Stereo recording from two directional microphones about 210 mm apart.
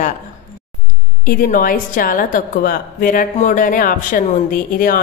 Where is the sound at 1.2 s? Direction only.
45° left (ahead or behind).